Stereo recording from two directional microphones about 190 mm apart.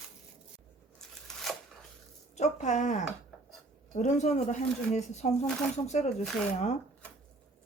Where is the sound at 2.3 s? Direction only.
35° left (ahead or behind).